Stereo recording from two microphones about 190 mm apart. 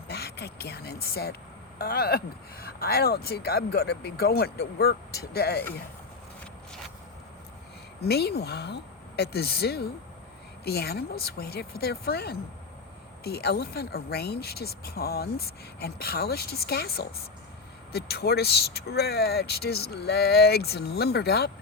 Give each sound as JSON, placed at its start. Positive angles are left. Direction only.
{"t": 0.1, "sound": "speech", "side_deg": 60}
{"t": 8.0, "sound": "speech", "side_deg": 60}